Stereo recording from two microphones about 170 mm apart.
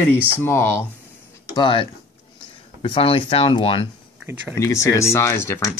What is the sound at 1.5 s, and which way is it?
Speech, 30° left (ahead or behind).